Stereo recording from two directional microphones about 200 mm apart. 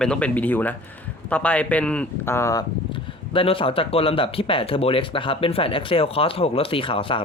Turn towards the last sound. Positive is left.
turn(degrees=25)  # may be behind; listen again after turning